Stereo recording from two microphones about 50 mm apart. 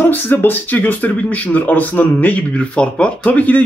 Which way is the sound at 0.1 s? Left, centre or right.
Left.